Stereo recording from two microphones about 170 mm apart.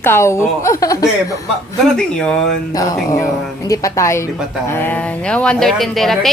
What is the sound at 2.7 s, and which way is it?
A woman's voice, 20° left (ahead or behind).